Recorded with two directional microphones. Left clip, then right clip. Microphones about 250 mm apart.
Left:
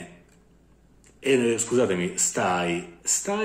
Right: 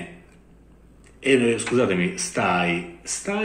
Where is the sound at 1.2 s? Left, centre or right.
Centre.